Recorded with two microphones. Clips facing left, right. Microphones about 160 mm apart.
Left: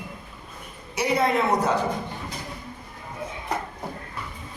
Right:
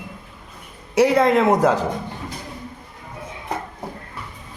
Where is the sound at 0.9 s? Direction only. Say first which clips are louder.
Right 7 dB; 90° right.